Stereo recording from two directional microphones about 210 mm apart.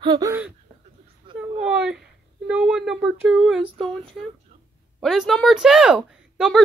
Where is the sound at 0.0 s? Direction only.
20° right (ahead or behind).